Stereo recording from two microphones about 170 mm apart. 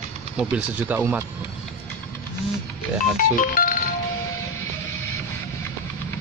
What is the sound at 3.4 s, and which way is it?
Music, 50° left (ahead or behind).